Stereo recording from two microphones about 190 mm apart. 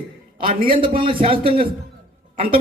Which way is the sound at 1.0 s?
30° right (ahead or behind).